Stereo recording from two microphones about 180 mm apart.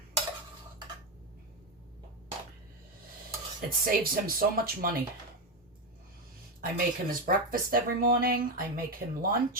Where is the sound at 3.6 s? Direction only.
55° right (ahead or behind).